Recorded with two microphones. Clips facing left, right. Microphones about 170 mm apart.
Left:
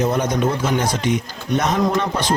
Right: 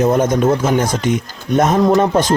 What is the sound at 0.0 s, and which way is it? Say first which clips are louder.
Speech: right 5 dB; 50° right (ahead or behind).